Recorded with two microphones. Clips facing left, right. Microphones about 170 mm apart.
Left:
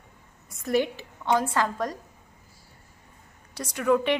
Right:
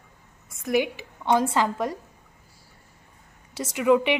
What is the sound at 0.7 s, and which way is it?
A woman's voice, 15° right (ahead or behind).